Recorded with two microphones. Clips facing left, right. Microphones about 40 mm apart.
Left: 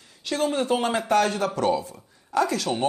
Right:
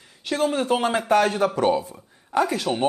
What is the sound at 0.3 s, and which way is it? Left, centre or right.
Speech, right.